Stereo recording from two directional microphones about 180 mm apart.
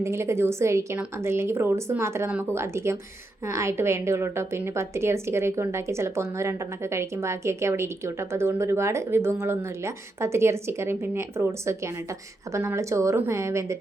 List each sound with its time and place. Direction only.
0.0 s a woman's voice: 15° right (ahead or behind)